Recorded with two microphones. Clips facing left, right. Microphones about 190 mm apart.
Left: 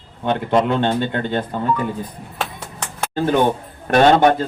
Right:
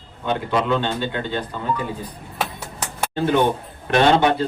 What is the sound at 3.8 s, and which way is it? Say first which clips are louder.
Speech: left 3 dB; 45° left (ahead or behind).